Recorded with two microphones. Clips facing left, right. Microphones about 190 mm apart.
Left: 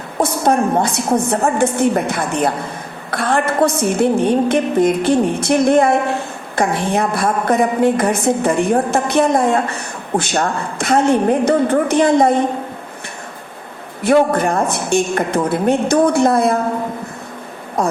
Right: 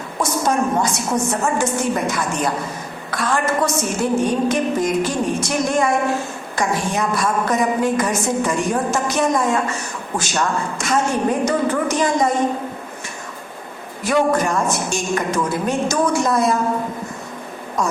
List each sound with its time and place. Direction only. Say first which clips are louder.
0.2 s a woman's voice: left 4 dB; 60° left (ahead or behind)
14.0 s a woman's voice: left 4 dB; 60° left (ahead or behind)
17.8 s speech: left 4 dB; 60° left (ahead or behind)